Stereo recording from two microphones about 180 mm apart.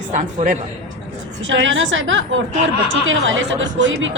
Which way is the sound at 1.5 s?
90° right.